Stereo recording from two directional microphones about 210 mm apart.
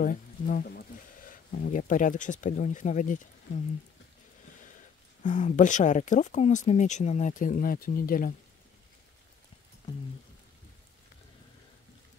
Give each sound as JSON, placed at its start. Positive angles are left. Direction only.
{"t": 0.0, "sound": "speech", "side_deg": 40}
{"t": 5.2, "sound": "speech", "side_deg": 35}